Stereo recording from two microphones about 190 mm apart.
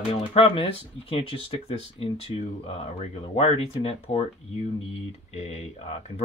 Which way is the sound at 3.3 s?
30° left (ahead or behind).